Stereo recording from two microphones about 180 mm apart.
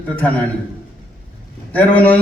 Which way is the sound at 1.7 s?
10° left (ahead or behind).